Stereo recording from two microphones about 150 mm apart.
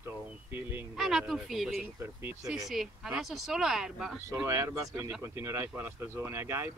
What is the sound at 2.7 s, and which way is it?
Speech, centre (ahead or behind).